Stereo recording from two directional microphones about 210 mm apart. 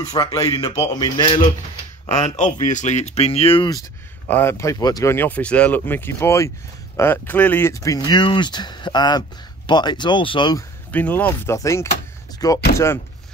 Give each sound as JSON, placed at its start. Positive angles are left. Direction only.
{"t": 0.1, "sound": "speech", "side_deg": 15}
{"t": 2.2, "sound": "speech", "side_deg": 35}
{"t": 4.3, "sound": "speech", "side_deg": 10}
{"t": 10.9, "sound": "speech", "side_deg": 5}